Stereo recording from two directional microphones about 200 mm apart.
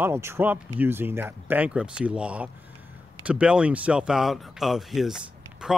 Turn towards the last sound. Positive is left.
turn(degrees=0)  # may be behind; listen again after turning